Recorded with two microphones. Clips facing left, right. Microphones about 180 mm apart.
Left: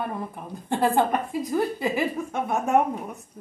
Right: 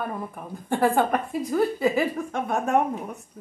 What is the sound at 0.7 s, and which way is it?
Speech, 15° left (ahead or behind).